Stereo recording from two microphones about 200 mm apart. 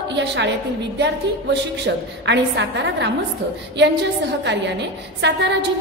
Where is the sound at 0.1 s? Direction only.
60° right (ahead or behind).